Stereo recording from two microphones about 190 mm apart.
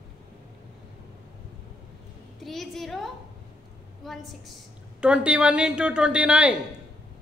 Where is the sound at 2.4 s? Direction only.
Centre (ahead or behind).